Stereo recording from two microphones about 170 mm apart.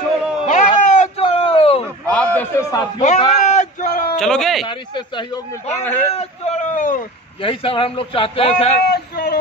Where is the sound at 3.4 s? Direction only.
45° left (ahead or behind).